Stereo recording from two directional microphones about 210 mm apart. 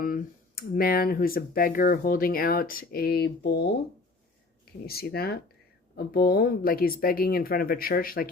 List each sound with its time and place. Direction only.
0.0 s speech: 40° left (ahead or behind)
4.9 s speech: 45° left (ahead or behind)